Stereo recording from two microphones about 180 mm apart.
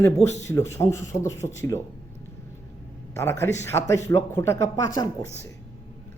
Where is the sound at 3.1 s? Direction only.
15° left (ahead or behind).